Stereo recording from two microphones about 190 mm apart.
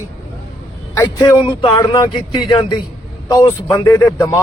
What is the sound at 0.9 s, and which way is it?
A man's voice, 20° left (ahead or behind).